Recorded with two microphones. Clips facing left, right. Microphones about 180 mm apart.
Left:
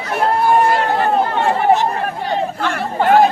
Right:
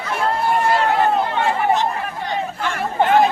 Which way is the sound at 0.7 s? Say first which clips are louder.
Left 1 dB; 50° left (ahead or behind).